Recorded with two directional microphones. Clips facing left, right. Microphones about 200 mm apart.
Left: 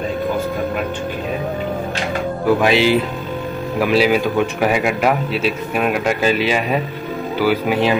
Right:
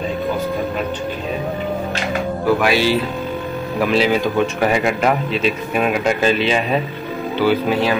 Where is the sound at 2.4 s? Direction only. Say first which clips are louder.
Left 2 dB; 20° left (ahead or behind).